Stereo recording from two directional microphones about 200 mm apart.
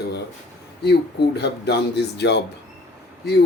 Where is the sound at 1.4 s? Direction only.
55° left (ahead or behind).